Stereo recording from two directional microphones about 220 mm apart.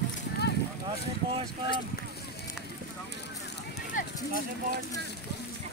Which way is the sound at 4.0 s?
35° left (ahead or behind).